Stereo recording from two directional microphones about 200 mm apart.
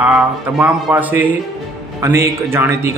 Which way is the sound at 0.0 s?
5° right (ahead or behind).